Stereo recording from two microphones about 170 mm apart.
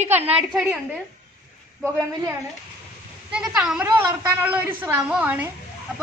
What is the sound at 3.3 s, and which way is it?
A woman's voice, 5° right (ahead or behind).